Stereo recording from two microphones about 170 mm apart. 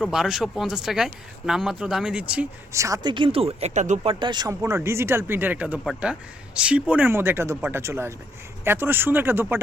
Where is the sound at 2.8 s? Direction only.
25° right (ahead or behind); by 4.0 s 45° right (ahead or behind).